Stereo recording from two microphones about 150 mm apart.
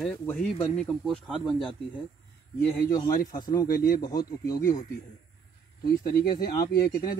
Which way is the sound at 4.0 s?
25° left (ahead or behind).